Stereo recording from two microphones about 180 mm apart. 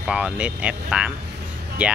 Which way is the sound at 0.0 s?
5° right (ahead or behind).